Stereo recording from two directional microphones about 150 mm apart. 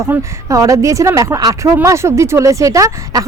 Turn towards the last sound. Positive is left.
turn(degrees=-20)  # may be behind; listen again after turning